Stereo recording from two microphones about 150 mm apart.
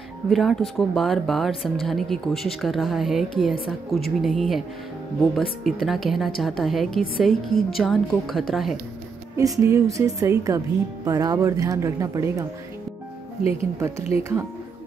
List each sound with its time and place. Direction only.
0.3 s speech: centre (ahead or behind)
9.4 s speech: 20° right (ahead or behind)
13.4 s speech: 40° left (ahead or behind)
14.1 s speech: 20° right (ahead or behind)